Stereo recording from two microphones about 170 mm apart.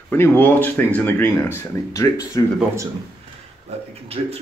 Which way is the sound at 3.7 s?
40° right (ahead or behind).